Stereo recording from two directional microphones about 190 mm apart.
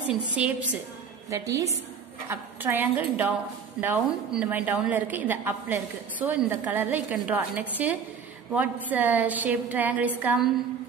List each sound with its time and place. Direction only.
0.1 s a woman's voice: 5° right (ahead or behind)